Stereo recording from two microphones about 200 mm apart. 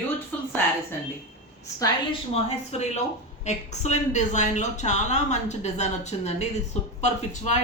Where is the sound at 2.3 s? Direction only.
35° left (ahead or behind).